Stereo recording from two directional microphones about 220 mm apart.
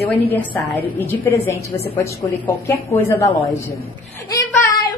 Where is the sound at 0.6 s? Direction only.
5° left (ahead or behind).